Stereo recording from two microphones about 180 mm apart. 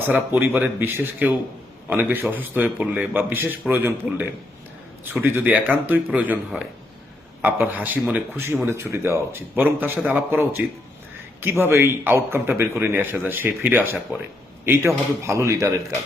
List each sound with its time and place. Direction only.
0.0 s a man's voice: 10° right (ahead or behind)